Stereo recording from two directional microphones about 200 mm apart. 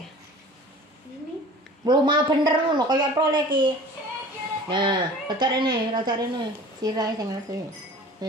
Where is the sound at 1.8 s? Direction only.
20° right (ahead or behind).